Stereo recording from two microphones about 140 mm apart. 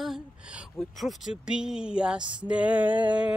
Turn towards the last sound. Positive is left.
turn(degrees=-10)  # may be behind; listen again after turning